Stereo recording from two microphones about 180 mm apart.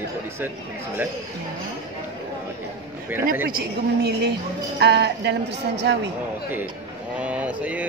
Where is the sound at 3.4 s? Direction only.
60° right (ahead or behind).